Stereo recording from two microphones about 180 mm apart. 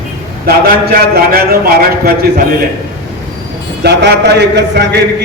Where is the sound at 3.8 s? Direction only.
65° right (ahead or behind).